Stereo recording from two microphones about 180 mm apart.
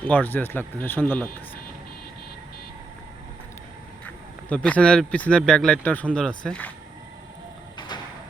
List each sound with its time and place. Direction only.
0.0 s speech: 10° left (ahead or behind)
4.0 s speech: 10° left (ahead or behind)
7.8 s sliding door: 25° left (ahead or behind)